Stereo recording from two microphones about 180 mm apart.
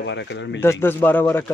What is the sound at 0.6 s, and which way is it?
Speech, 15° left (ahead or behind).